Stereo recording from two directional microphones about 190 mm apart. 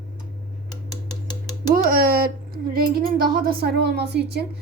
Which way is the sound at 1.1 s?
20° left (ahead or behind).